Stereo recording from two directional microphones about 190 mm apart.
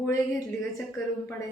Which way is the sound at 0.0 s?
15° left (ahead or behind).